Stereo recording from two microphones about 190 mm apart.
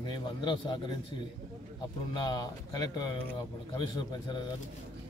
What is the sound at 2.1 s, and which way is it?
Speech, 20° left (ahead or behind).